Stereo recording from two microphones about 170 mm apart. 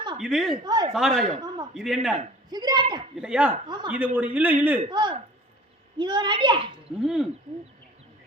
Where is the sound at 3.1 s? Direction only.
5° right (ahead or behind).